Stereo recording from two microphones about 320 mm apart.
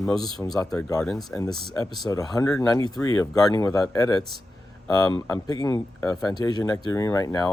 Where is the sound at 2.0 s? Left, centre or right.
Centre.